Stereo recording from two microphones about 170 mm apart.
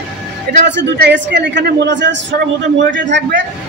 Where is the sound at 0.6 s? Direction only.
90° right.